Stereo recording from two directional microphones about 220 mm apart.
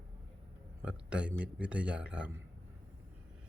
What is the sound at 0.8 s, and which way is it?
A man's voice, 5° right (ahead or behind).